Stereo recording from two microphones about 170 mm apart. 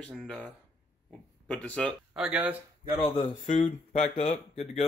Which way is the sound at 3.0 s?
25° left (ahead or behind).